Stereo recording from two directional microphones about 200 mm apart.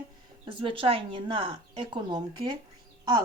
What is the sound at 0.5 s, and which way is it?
A woman's voice, 25° right (ahead or behind).